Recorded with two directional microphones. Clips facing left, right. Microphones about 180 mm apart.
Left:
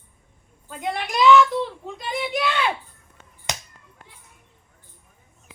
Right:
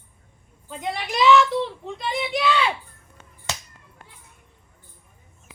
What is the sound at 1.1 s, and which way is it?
Child singing, centre (ahead or behind).